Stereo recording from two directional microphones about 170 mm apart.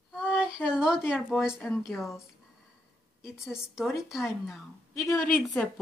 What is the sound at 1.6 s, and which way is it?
Speech, 10° left (ahead or behind).